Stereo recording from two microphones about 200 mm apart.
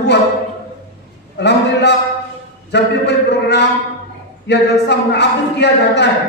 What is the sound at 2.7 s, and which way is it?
Speech, 60° left (ahead or behind).